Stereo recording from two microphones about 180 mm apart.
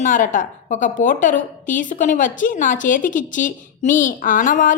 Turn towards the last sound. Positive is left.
turn(degrees=45)  # may be behind; listen again after turning